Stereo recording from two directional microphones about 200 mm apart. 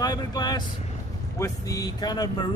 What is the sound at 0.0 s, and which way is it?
Speech, 20° left (ahead or behind).